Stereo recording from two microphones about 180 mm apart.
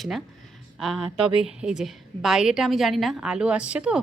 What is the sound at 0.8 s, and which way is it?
A woman's voice, centre (ahead or behind).